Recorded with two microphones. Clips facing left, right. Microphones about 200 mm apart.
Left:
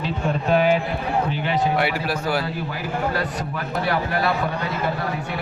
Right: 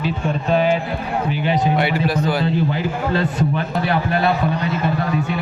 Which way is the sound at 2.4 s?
25° right (ahead or behind).